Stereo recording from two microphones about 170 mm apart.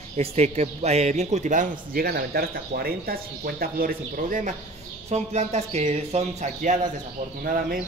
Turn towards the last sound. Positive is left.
turn(degrees=-55)  # may be behind; listen again after turning